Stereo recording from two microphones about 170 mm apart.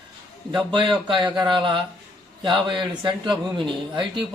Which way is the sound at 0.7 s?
30° right (ahead or behind).